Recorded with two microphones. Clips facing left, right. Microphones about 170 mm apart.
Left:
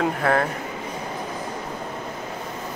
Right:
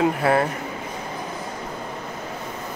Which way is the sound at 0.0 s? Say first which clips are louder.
Right 2 dB; 5° right (ahead or behind).